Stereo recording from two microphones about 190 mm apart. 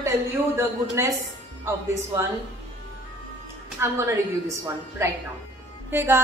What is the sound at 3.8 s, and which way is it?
Speech, 15° right (ahead or behind).